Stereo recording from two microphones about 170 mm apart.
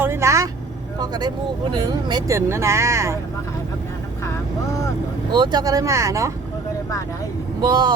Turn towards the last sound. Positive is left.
turn(degrees=-25)  # may be behind; listen again after turning